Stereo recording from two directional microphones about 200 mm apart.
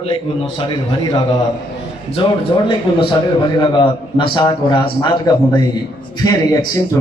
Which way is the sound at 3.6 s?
25° left (ahead or behind).